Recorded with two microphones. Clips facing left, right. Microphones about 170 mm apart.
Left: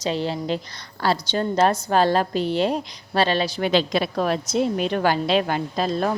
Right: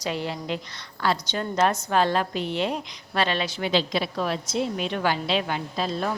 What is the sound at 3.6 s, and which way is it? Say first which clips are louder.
Speech: left 3 dB; 50° left (ahead or behind).